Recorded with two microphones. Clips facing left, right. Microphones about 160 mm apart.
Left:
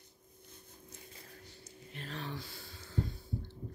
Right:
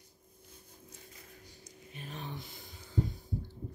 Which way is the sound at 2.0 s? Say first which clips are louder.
Left 1 dB; 20° right (ahead or behind).